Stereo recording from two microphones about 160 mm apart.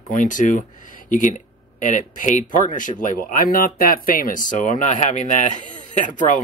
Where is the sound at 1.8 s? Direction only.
55° left (ahead or behind).